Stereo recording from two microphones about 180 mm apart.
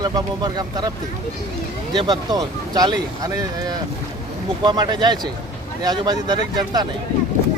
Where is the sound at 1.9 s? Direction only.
25° right (ahead or behind).